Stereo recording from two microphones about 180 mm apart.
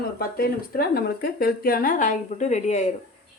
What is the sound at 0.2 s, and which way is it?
Speech, 55° left (ahead or behind).